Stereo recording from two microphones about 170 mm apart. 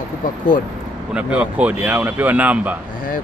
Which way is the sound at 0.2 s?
55° left (ahead or behind).